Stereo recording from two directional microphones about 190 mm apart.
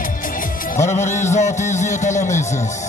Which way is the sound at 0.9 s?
40° left (ahead or behind).